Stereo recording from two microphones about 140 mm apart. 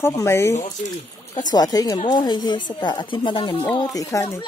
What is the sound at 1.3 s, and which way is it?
Speech, 30° left (ahead or behind).